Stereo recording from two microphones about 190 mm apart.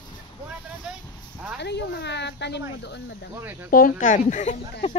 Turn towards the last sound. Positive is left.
turn(degrees=40)  # may be behind; listen again after turning